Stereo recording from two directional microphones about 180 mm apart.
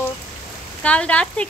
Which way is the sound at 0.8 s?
5° left (ahead or behind).